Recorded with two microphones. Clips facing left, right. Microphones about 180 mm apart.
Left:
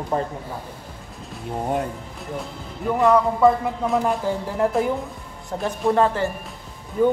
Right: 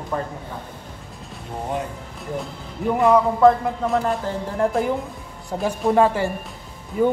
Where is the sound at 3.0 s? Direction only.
Centre (ahead or behind).